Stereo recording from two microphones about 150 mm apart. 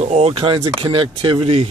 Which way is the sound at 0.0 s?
45° right (ahead or behind).